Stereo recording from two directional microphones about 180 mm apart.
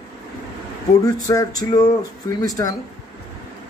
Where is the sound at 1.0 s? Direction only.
20° left (ahead or behind).